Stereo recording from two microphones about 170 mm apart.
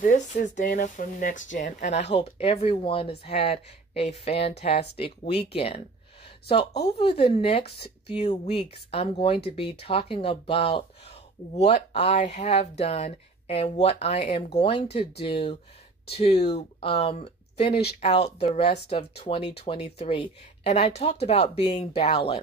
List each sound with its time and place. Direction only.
0.0 s speech: 45° left (ahead or behind)
17.6 s speech: 70° left (ahead or behind)
18.0 s speech: 40° left (ahead or behind)